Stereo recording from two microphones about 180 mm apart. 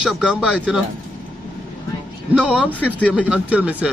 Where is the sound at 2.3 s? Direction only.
5° right (ahead or behind).